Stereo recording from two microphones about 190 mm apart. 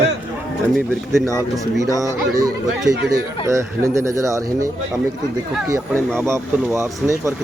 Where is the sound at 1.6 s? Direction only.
15° right (ahead or behind).